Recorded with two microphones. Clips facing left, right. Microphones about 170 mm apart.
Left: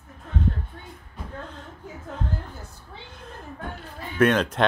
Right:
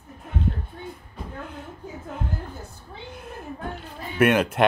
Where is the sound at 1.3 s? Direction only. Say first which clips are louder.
Right 1 dB; 10° right (ahead or behind).